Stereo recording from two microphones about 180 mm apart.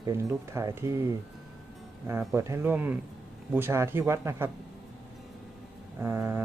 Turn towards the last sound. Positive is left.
turn(degrees=-15)  # may be behind; listen again after turning